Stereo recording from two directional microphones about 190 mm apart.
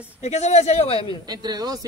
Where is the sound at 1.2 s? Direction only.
20° right (ahead or behind).